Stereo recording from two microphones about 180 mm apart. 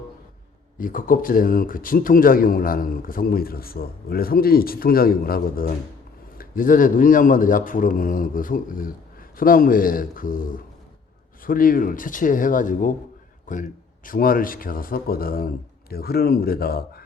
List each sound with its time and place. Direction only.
0.8 s a man's voice: 50° left (ahead or behind)